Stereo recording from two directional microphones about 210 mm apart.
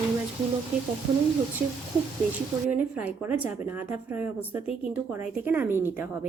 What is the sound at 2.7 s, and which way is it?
A woman's voice, 10° right (ahead or behind).